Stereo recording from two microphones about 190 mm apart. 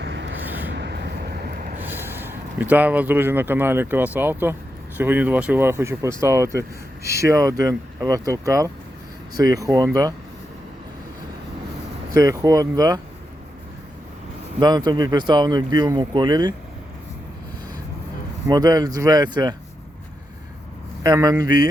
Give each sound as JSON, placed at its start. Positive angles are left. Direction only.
{"t": 0.0, "sound": "vehicle", "side_deg": -70}
{"t": 0.4, "sound": "a sound", "side_deg": -10}
{"t": 0.7, "sound": "vehicle", "side_deg": -65}
{"t": 1.8, "sound": "speech", "side_deg": -10}
{"t": 12.1, "sound": "speech", "side_deg": -20}
{"t": 14.6, "sound": "speech", "side_deg": -20}
{"t": 18.4, "sound": "speech", "side_deg": -20}
{"t": 21.0, "sound": "speech", "side_deg": -20}